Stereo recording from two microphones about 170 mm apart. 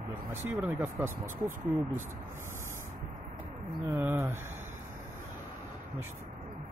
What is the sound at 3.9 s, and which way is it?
Speech, 15° right (ahead or behind).